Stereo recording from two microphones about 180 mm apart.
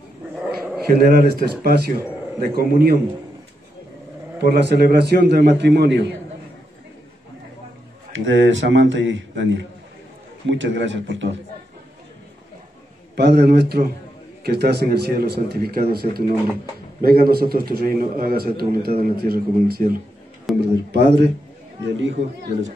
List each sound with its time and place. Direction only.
1.0 s a man's voice: 60° right (ahead or behind)
4.4 s a man's voice: 70° right (ahead or behind)
8.1 s a man's voice: 90° right
13.1 s a man's voice: 65° right (ahead or behind)
20.6 s a man's voice: 70° right (ahead or behind)
21.9 s speech: 90° right